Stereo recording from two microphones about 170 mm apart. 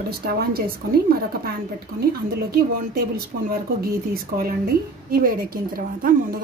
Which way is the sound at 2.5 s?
65° right (ahead or behind).